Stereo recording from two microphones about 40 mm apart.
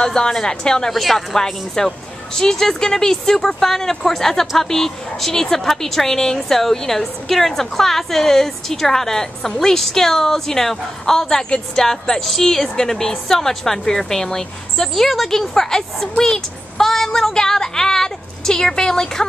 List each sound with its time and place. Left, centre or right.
0.0 s a woman's voice: centre
15.0 s a woman's voice: centre